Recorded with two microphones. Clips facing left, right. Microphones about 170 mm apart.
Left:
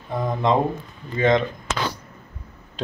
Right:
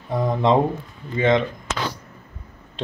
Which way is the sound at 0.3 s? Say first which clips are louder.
Right 2 dB; 30° right (ahead or behind).